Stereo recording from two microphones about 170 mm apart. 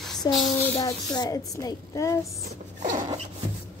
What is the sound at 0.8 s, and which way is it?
Speech, 20° left (ahead or behind).